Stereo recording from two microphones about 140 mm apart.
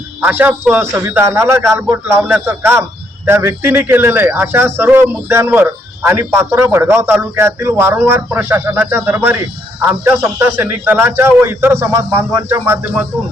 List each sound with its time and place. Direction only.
0.2 s a man's voice: 15° right (ahead or behind)